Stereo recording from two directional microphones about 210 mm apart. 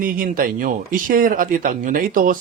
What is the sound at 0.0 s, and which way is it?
Speech, 45° right (ahead or behind).